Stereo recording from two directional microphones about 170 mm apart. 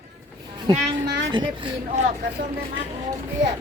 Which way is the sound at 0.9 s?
90° right.